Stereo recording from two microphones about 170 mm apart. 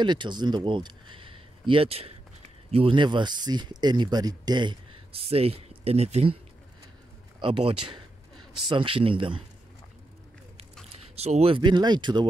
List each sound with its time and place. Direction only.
0.0 s speech: 25° right (ahead or behind)
7.3 s a man's voice: 35° right (ahead or behind)
10.9 s speech: 40° right (ahead or behind)